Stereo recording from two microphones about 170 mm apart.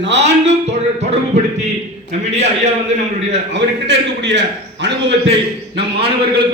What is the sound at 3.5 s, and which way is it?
A man's voice, 90° right.